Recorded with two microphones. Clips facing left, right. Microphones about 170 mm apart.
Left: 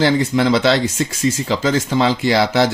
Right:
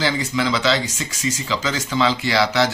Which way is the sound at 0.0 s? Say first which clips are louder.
Left 6 dB; 55° left (ahead or behind).